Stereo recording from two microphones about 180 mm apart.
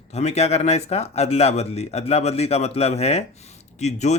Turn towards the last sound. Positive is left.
turn(degrees=40)  # may be behind; listen again after turning